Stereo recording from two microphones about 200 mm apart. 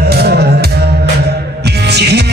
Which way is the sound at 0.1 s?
55° right (ahead or behind).